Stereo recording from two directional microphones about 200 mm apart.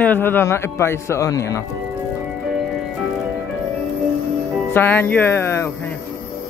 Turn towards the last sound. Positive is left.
turn(degrees=10)  # may be behind; listen again after turning